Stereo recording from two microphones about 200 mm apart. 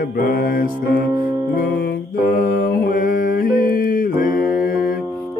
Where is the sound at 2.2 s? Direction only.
45° left (ahead or behind).